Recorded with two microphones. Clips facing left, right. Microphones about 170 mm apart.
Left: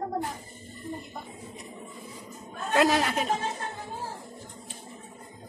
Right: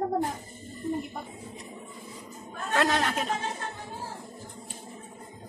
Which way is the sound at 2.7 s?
10° left (ahead or behind).